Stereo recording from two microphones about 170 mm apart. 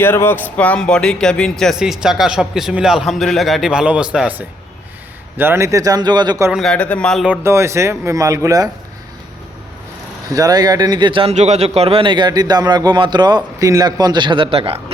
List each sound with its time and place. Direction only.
0.0 s a man's voice: 15° left (ahead or behind); by 6.5 s 25° right (ahead or behind)
6.5 s speech: centre (ahead or behind)
7.3 s speech: 15° right (ahead or behind)
10.3 s a man's voice: 20° right (ahead or behind)